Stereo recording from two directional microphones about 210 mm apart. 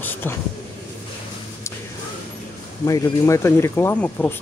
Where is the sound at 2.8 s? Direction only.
15° left (ahead or behind).